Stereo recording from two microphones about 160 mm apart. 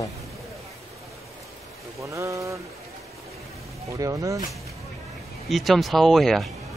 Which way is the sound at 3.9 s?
20° right (ahead or behind).